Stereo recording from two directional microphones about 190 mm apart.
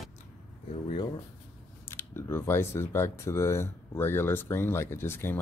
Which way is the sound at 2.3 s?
15° left (ahead or behind).